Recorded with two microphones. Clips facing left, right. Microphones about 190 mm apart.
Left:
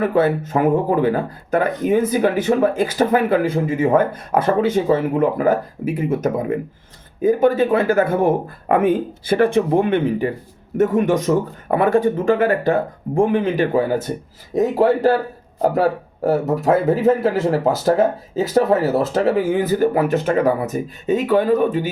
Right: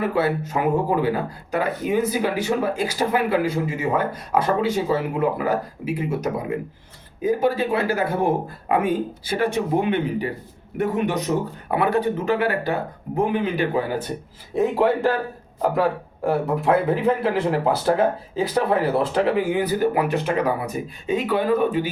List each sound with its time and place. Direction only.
0.0 s speech: 50° left (ahead or behind)
7.2 s speech: 50° left (ahead or behind)